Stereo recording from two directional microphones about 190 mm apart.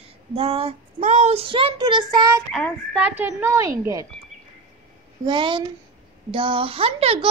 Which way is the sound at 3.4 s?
15° right (ahead or behind).